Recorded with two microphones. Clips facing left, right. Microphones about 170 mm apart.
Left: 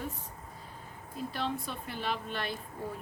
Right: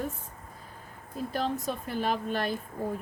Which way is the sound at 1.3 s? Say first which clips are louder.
Right 6 dB; 45° right (ahead or behind).